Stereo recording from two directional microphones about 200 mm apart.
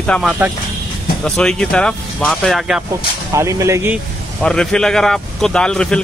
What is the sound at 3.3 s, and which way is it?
Speech, 15° right (ahead or behind).